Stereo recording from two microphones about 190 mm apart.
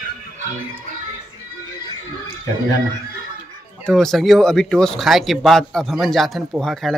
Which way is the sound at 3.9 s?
Centre (ahead or behind).